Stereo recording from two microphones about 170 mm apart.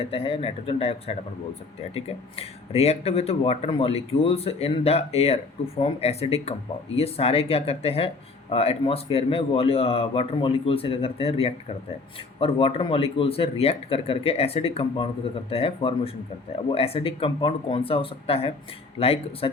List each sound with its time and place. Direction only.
0.0 s speech: 35° left (ahead or behind)